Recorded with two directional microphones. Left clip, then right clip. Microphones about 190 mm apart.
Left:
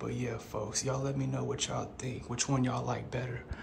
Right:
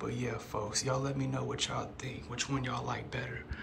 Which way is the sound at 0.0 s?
15° left (ahead or behind).